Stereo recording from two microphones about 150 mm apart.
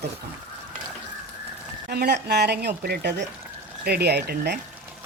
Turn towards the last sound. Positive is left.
turn(degrees=-90)